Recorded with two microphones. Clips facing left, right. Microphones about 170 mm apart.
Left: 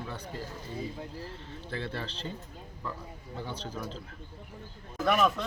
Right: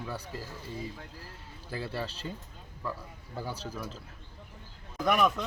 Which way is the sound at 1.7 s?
5° right (ahead or behind).